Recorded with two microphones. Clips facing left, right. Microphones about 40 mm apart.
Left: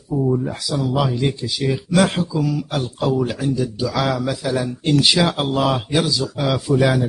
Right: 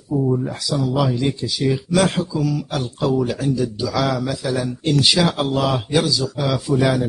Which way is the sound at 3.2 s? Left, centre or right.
Centre.